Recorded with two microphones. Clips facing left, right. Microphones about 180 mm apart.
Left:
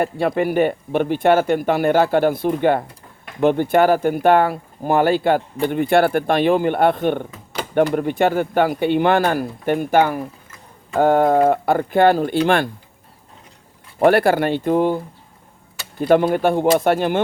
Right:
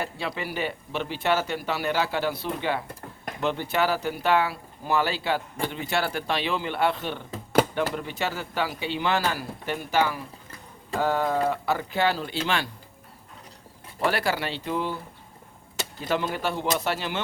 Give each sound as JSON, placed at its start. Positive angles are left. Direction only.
{"t": 0.0, "sound": "speech", "side_deg": 55}
{"t": 14.0, "sound": "speech", "side_deg": 55}